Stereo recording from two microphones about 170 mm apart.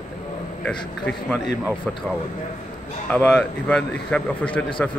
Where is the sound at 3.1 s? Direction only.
10° left (ahead or behind).